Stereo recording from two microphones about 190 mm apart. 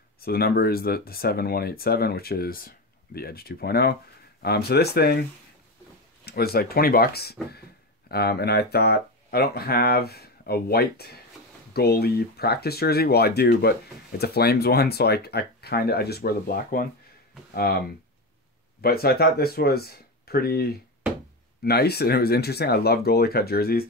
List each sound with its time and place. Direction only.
0.2 s speech: 55° left (ahead or behind)
6.2 s speech: 55° left (ahead or behind)